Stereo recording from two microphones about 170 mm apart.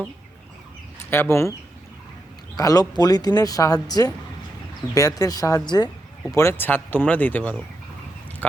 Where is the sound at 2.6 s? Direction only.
20° left (ahead or behind).